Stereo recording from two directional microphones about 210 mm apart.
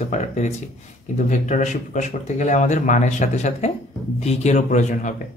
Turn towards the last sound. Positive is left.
turn(degrees=35)  # may be behind; listen again after turning